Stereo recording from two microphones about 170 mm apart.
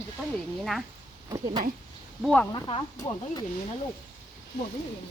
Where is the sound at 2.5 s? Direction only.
25° left (ahead or behind).